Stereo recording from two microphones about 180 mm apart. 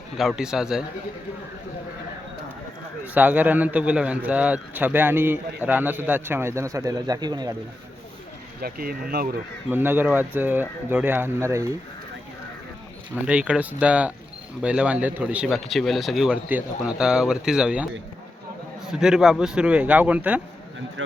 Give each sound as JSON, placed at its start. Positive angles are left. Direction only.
{"t": 0.2, "sound": "speech", "side_deg": -5}
{"t": 3.2, "sound": "a man's voice", "side_deg": -10}
{"t": 8.6, "sound": "speech", "side_deg": -55}
{"t": 9.6, "sound": "a man's voice", "side_deg": -10}
{"t": 13.2, "sound": "a man's voice", "side_deg": -5}
{"t": 18.9, "sound": "speech", "side_deg": -5}